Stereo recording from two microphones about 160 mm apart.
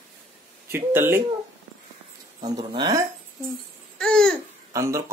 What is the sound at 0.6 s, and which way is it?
Speech, 15° right (ahead or behind).